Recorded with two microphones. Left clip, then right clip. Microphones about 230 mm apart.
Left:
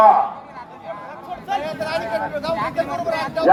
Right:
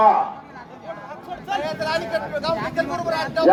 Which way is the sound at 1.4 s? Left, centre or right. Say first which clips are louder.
Even; right.